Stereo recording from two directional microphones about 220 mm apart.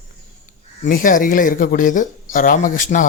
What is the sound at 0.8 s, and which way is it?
Speech, 40° left (ahead or behind).